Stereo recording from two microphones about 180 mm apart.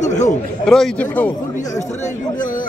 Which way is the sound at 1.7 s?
40° left (ahead or behind).